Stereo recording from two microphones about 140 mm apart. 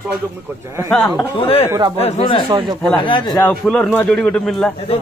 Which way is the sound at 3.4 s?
5° left (ahead or behind).